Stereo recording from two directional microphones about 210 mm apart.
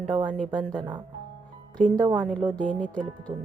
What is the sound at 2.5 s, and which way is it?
Speech, 5° left (ahead or behind).